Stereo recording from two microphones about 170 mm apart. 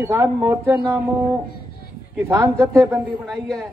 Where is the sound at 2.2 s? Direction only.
15° right (ahead or behind).